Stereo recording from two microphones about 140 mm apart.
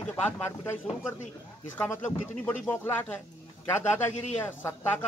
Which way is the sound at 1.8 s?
15° left (ahead or behind).